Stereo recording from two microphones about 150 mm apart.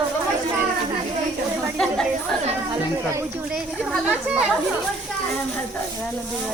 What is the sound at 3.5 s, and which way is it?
Speech, 5° right (ahead or behind).